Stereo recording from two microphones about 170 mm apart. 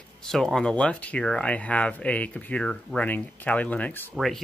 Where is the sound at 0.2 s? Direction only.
Centre (ahead or behind).